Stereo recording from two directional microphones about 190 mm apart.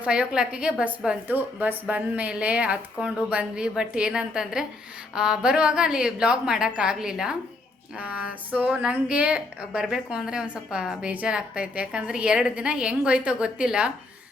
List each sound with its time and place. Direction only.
0.0 s a woman's voice: 5° right (ahead or behind)